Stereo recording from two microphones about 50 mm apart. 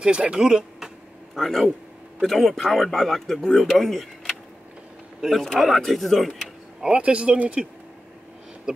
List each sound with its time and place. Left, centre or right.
0.0 s speech: centre
1.3 s a man's voice: centre
5.4 s speech: centre
6.8 s speech: right
8.7 s speech: right